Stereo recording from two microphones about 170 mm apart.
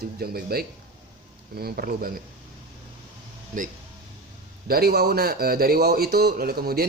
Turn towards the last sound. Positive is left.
turn(degrees=-65)  # may be behind; listen again after turning